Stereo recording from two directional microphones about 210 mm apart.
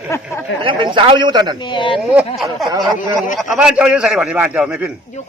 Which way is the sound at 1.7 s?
25° left (ahead or behind).